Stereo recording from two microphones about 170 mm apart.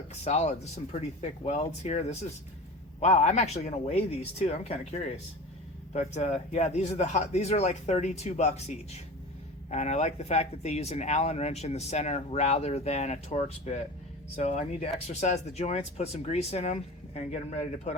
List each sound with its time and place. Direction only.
0.1 s speech: 40° left (ahead or behind)